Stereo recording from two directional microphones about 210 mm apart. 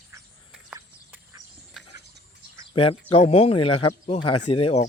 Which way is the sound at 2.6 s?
25° left (ahead or behind).